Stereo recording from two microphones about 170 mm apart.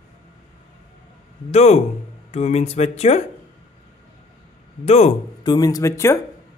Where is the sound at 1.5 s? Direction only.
40° left (ahead or behind).